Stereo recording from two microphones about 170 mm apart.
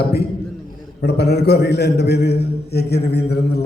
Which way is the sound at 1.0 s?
75° left (ahead or behind).